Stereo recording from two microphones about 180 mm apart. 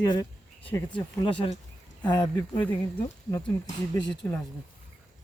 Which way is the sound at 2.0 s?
25° left (ahead or behind).